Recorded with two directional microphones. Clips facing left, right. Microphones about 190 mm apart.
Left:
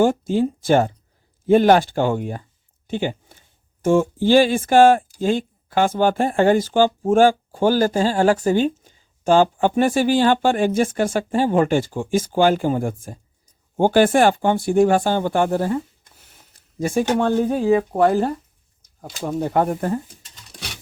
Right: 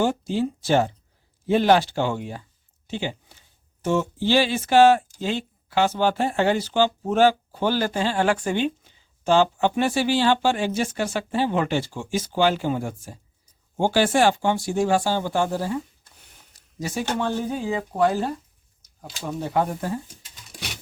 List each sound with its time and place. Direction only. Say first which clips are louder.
0.0 s speech: left 5 dB; 50° left (ahead or behind)
16.8 s speech: left 7 dB; 50° left (ahead or behind)